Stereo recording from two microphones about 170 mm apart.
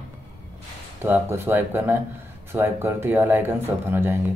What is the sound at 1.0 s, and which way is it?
Speech, 15° right (ahead or behind).